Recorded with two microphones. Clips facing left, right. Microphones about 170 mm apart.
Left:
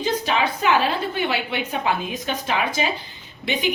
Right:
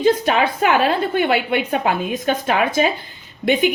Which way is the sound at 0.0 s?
55° right (ahead or behind).